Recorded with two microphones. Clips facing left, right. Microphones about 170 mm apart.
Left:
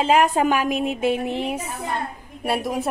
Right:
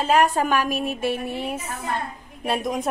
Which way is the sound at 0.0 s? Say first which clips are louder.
Left 2 dB; 20° left (ahead or behind).